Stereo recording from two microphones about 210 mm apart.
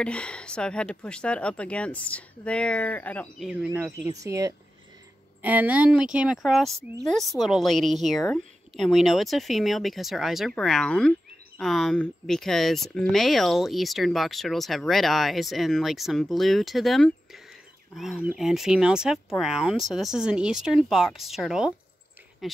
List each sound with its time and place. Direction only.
0.0 s a woman's voice: 5° left (ahead or behind)
3.4 s a woman's voice: 5° right (ahead or behind)